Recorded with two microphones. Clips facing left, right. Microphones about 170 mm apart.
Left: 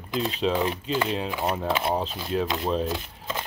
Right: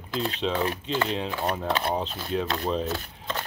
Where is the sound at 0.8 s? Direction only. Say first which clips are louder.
Left 1 dB; 5° left (ahead or behind).